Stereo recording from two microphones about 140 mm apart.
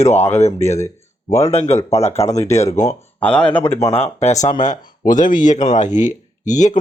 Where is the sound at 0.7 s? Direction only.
20° left (ahead or behind).